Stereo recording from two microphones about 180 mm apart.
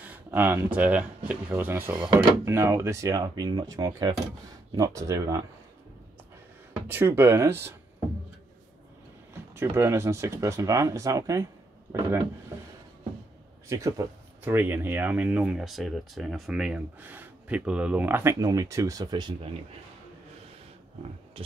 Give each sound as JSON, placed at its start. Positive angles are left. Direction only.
{"t": 0.0, "sound": "speech", "side_deg": -10}
{"t": 6.7, "sound": "speech", "side_deg": -10}
{"t": 9.3, "sound": "speech", "side_deg": -15}
{"t": 13.7, "sound": "speech", "side_deg": -15}